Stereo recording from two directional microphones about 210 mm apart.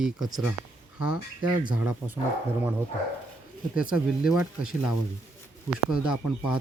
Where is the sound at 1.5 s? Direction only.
20° right (ahead or behind).